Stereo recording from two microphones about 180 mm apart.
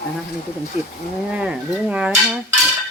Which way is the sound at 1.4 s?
5° right (ahead or behind).